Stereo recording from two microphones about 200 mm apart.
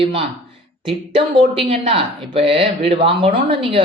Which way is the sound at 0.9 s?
25° right (ahead or behind).